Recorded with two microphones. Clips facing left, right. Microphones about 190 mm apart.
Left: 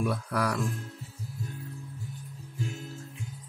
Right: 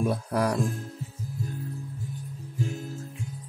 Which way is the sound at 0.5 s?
35° right (ahead or behind).